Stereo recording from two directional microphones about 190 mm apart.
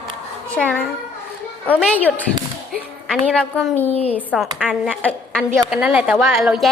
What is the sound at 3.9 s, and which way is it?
Speech, 30° left (ahead or behind).